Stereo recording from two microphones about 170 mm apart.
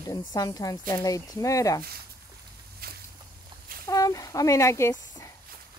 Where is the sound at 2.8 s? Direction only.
65° right (ahead or behind).